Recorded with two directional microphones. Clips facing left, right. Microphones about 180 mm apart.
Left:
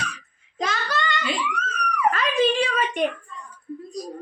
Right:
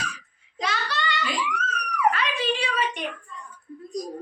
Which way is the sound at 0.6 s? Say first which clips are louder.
Left 2 dB; 45° left (ahead or behind).